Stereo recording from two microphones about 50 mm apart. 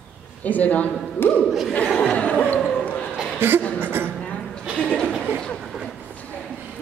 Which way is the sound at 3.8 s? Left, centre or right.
Right.